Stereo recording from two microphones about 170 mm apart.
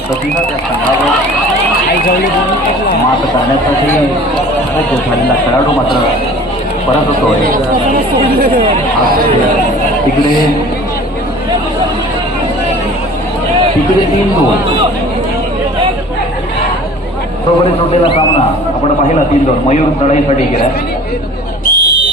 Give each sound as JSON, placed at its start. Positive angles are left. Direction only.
{"t": 21.7, "sound": "whistle", "side_deg": 60}